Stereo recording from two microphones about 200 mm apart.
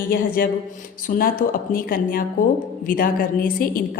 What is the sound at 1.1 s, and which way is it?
A woman's voice, 45° left (ahead or behind).